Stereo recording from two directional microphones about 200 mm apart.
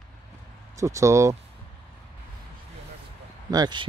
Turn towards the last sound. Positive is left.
turn(degrees=-20)  # may be behind; listen again after turning